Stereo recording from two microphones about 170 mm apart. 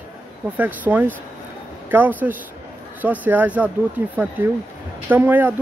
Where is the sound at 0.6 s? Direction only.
10° right (ahead or behind).